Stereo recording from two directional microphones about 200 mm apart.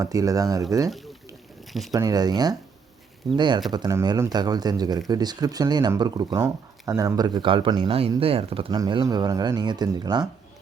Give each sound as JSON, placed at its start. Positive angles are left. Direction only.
{"t": 0.0, "sound": "speech", "side_deg": -15}
{"t": 1.6, "sound": "a sound", "side_deg": 0}
{"t": 1.9, "sound": "speech", "side_deg": -20}